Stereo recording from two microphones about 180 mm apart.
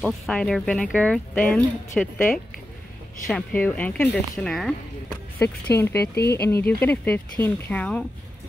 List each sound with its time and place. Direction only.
0.0 s speech: 5° left (ahead or behind)
5.9 s speech: 65° left (ahead or behind)
6.3 s speech: 15° left (ahead or behind)